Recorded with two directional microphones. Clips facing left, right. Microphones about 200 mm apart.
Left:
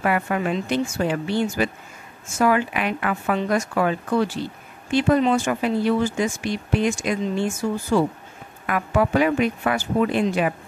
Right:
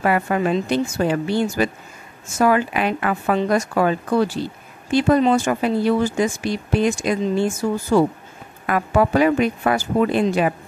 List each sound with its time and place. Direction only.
0.0 s speech: 35° right (ahead or behind)